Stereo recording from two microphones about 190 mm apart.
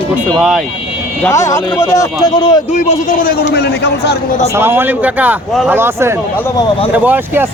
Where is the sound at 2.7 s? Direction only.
40° left (ahead or behind); by 4.2 s 60° left (ahead or behind).